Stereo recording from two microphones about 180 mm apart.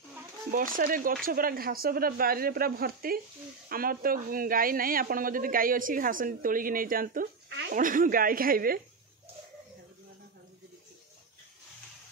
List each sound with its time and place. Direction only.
0.5 s speech: 50° right (ahead or behind)